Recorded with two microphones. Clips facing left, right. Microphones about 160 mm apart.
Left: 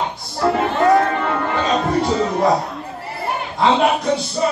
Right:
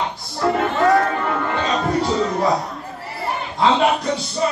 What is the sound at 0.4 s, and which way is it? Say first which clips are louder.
Music: left 1 dB; centre (ahead or behind).